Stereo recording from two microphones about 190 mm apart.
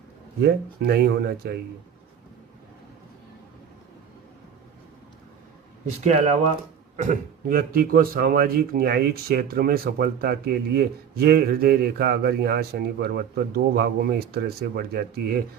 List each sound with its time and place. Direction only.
0.4 s a man's voice: 55° right (ahead or behind)
6.1 s a man's voice: 40° right (ahead or behind); by 15.4 s 55° right (ahead or behind)